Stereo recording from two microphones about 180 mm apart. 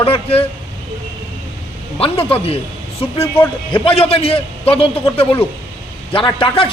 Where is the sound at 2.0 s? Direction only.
30° left (ahead or behind).